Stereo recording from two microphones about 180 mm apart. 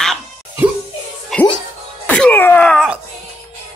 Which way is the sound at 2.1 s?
10° left (ahead or behind).